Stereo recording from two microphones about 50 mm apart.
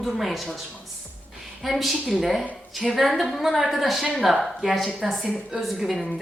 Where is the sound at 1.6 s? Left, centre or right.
Centre.